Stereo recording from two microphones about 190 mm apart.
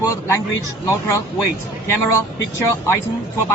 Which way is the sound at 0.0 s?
15° left (ahead or behind).